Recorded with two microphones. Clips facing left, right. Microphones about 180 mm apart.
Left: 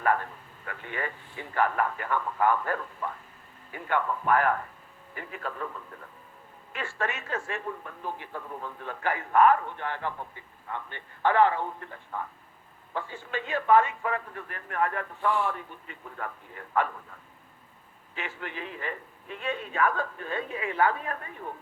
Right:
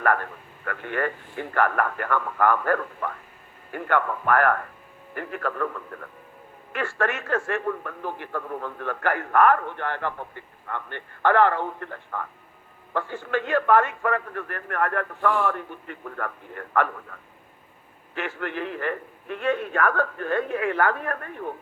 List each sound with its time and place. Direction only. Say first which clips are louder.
0.0 s a man's voice: right 3 dB; 60° right (ahead or behind)
18.3 s a man's voice: right 8 dB; 60° right (ahead or behind)